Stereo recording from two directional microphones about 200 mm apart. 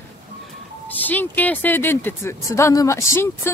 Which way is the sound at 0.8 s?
10° left (ahead or behind).